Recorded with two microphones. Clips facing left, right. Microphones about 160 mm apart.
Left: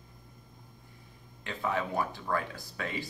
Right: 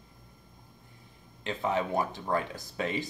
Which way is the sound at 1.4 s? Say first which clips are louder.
Right 3 dB; 20° right (ahead or behind).